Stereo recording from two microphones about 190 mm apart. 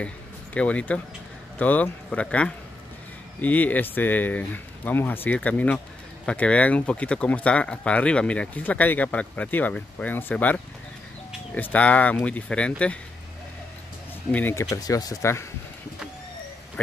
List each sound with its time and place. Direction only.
0.6 s speech: 5° left (ahead or behind)
14.3 s speech: 10° left (ahead or behind)